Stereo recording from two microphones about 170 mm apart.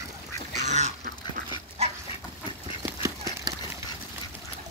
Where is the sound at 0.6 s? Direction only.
40° right (ahead or behind).